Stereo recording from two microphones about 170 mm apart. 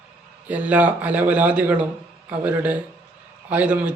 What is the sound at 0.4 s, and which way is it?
A man's voice, 10° right (ahead or behind).